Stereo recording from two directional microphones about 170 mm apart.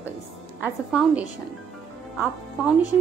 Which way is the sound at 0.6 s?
10° right (ahead or behind).